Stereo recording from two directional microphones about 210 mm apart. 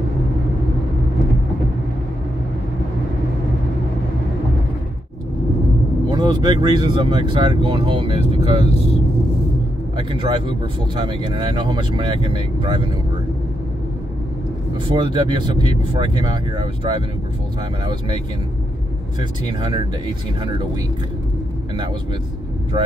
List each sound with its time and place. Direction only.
6.0 s speech: 20° right (ahead or behind)
9.9 s speech: 25° right (ahead or behind)
14.9 s speech: 25° right (ahead or behind)
19.4 s speech: 20° right (ahead or behind)